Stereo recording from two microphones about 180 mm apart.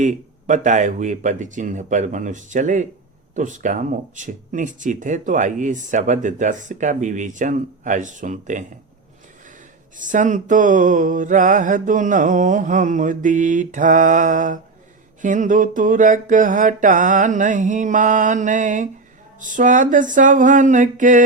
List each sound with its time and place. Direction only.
0.0 s speech: 45° right (ahead or behind)
10.0 s speech: 45° right (ahead or behind)